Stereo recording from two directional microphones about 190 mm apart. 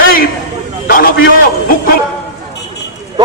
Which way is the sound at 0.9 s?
50° left (ahead or behind).